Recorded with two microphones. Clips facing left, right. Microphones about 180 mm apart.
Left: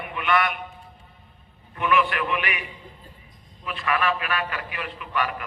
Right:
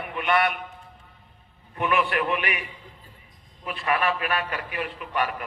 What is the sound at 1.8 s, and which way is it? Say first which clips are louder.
Speech: left 1 dB; 40° right (ahead or behind).